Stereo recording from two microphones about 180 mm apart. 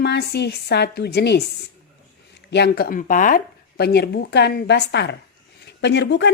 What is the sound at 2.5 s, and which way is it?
A woman's voice, 65° left (ahead or behind).